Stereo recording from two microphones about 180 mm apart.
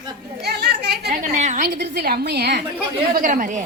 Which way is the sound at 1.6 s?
65° right (ahead or behind).